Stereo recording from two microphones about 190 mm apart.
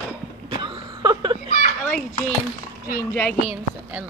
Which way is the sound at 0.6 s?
25° right (ahead or behind).